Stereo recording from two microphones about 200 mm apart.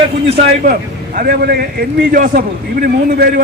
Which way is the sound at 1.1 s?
50° right (ahead or behind).